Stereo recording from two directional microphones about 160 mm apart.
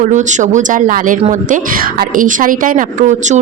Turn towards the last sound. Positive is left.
turn(degrees=-50)  # may be behind; listen again after turning